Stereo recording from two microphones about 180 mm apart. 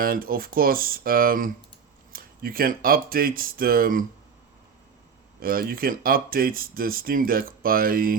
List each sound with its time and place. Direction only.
0.0 s speech: 55° right (ahead or behind)
5.4 s speech: 55° right (ahead or behind)